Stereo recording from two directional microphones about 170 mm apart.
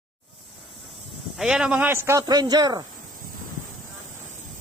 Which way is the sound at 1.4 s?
5° right (ahead or behind).